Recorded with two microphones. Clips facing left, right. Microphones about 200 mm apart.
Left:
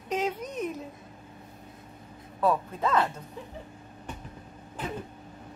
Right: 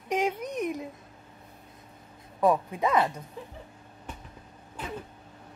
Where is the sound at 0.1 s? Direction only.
10° right (ahead or behind).